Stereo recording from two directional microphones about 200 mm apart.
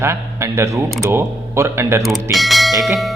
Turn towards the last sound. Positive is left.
turn(degrees=0)  # may be behind; listen again after turning